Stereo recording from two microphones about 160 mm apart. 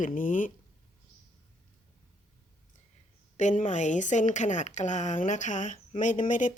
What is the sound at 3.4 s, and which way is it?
A woman's voice, 50° left (ahead or behind).